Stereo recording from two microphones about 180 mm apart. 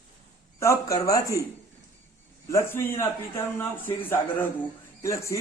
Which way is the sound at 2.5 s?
15° left (ahead or behind).